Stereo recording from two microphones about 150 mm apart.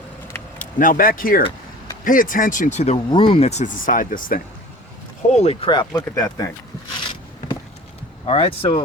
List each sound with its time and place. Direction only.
0.6 s speech: 65° left (ahead or behind); by 3.0 s 50° left (ahead or behind)
3.1 s speech: 35° left (ahead or behind)
3.6 s speech: 65° left (ahead or behind)
5.3 s speech: 45° left (ahead or behind)
5.8 s speech: 25° left (ahead or behind)
8.3 s speech: 40° left (ahead or behind)